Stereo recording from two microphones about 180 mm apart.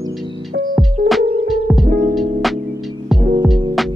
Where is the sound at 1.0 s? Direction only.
50° right (ahead or behind).